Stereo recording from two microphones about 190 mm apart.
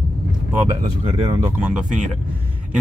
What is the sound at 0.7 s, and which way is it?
Speech, 25° right (ahead or behind).